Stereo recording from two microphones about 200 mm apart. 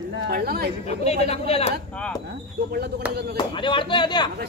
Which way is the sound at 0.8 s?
30° left (ahead or behind).